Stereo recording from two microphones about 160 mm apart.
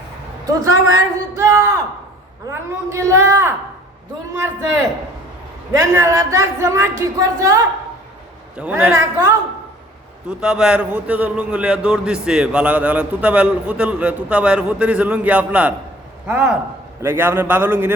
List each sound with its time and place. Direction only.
0.4 s a man's voice: 20° right (ahead or behind)
5.7 s a woman's voice: 20° right (ahead or behind)
8.8 s a man's voice: 15° right (ahead or behind)
10.2 s a man's voice: 5° right (ahead or behind)
17.0 s a man's voice: 15° right (ahead or behind)